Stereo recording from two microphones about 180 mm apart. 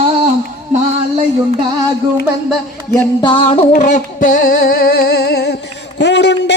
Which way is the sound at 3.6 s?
45° left (ahead or behind).